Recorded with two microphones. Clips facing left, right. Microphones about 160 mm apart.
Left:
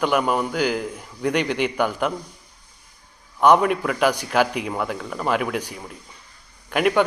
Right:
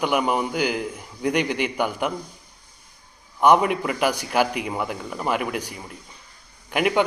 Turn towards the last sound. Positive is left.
turn(degrees=-10)  # may be behind; listen again after turning